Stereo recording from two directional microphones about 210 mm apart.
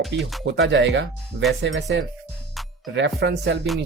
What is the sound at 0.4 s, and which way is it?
Speech, 60° right (ahead or behind).